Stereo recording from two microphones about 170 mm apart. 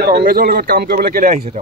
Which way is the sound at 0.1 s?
60° right (ahead or behind).